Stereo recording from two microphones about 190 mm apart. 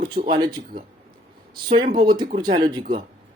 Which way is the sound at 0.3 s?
50° right (ahead or behind).